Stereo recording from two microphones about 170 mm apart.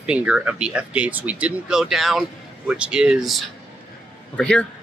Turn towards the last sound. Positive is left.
turn(degrees=5)  # may be behind; listen again after turning